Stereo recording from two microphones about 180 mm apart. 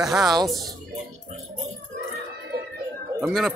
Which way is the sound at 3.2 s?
Centre (ahead or behind).